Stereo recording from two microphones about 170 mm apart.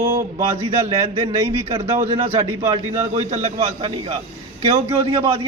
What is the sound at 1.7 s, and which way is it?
A man's voice, 40° right (ahead or behind).